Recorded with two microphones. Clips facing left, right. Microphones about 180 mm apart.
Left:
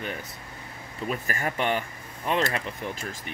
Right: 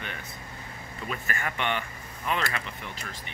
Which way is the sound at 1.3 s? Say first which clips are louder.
Left 3 dB; 40° left (ahead or behind).